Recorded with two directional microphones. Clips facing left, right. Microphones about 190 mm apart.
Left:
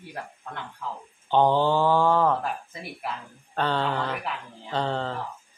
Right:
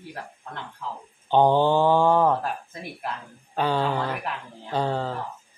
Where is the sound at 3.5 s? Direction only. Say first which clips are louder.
Right 2 dB; 10° right (ahead or behind).